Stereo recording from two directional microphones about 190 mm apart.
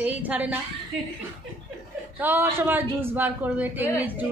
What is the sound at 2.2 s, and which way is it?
A woman's voice, 10° right (ahead or behind).